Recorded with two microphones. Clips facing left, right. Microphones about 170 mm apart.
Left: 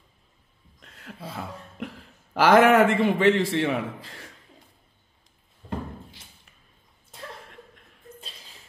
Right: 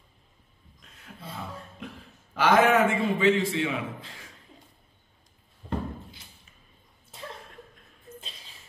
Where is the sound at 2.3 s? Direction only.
75° left (ahead or behind).